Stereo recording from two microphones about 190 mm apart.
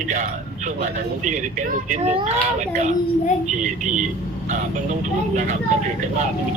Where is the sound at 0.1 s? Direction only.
40° right (ahead or behind).